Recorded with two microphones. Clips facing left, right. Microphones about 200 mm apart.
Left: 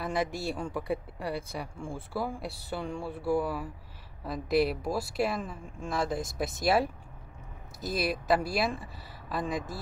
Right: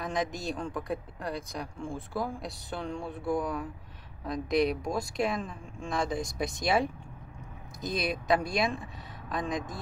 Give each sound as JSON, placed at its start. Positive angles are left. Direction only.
{"t": 0.0, "sound": "speech", "side_deg": 10}